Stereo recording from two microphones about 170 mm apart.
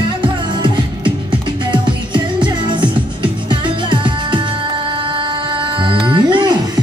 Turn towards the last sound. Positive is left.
turn(degrees=-25)  # may be behind; listen again after turning